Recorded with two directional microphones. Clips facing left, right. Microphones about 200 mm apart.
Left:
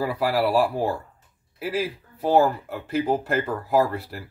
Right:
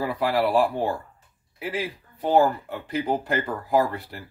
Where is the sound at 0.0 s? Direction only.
5° left (ahead or behind).